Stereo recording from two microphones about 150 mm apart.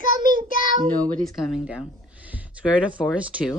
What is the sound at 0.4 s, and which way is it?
Child singing, 65° right (ahead or behind).